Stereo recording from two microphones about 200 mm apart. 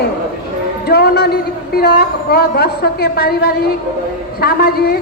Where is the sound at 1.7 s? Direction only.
50° left (ahead or behind).